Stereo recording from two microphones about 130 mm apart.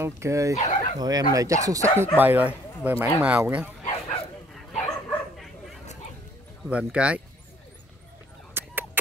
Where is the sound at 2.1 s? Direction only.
15° right (ahead or behind).